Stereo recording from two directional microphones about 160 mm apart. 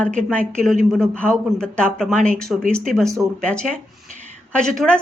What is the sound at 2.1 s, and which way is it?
Speech, 55° right (ahead or behind).